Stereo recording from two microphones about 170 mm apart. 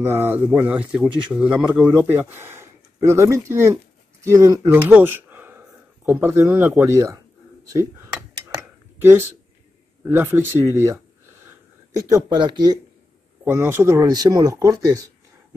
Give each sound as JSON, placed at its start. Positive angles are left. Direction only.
{"t": 0.0, "sound": "speech", "side_deg": -15}
{"t": 4.8, "sound": "a sound", "side_deg": -10}
{"t": 6.0, "sound": "speech", "side_deg": -15}
{"t": 10.0, "sound": "speech", "side_deg": -15}
{"t": 12.1, "sound": "speech", "side_deg": -25}
{"t": 13.4, "sound": "speech", "side_deg": -10}